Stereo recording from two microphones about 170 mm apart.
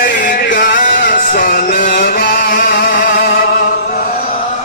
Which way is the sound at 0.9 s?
55° left (ahead or behind).